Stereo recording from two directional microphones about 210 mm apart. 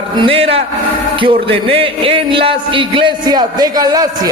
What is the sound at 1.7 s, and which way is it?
A man's voice, 25° right (ahead or behind).